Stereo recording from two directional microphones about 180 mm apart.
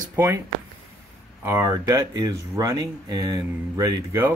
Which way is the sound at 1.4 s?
15° right (ahead or behind).